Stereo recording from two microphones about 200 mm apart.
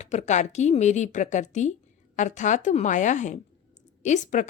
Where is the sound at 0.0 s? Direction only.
35° left (ahead or behind).